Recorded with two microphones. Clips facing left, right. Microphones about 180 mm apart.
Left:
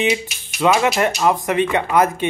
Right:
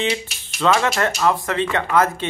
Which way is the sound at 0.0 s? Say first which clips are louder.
Left 3 dB; 15° left (ahead or behind).